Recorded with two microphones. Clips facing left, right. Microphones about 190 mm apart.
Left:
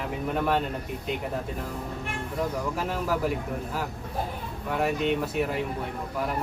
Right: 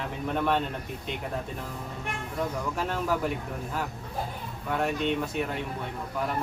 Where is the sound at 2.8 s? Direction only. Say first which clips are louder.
Even; 5° left (ahead or behind).